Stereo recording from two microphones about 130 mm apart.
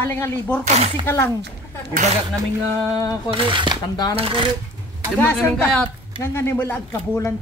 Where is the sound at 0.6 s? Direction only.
55° right (ahead or behind).